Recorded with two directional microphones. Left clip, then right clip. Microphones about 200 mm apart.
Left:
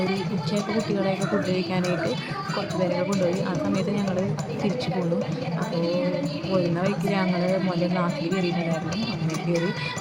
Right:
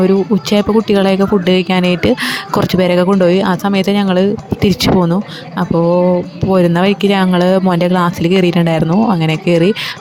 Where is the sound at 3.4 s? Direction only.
45° right (ahead or behind).